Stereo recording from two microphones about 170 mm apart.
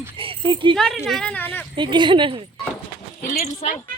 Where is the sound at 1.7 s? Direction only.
25° right (ahead or behind).